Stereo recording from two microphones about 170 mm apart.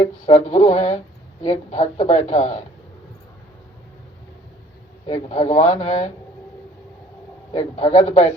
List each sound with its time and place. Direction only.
0.0 s a woman's voice: 35° left (ahead or behind)
5.0 s a woman's voice: 35° left (ahead or behind)
7.5 s a man's voice: 35° left (ahead or behind)